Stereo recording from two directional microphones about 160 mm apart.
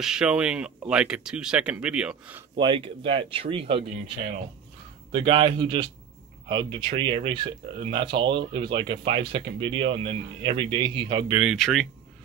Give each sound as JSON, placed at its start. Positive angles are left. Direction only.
{"t": 0.0, "sound": "speech", "side_deg": -5}
{"t": 2.6, "sound": "speech", "side_deg": -30}
{"t": 5.1, "sound": "speech", "side_deg": -30}
{"t": 11.5, "sound": "speech", "side_deg": 0}